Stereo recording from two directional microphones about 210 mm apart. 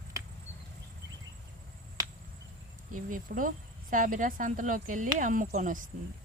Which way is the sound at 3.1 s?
40° right (ahead or behind).